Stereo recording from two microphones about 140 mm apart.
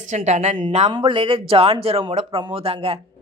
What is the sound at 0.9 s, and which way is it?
Speech, 35° right (ahead or behind).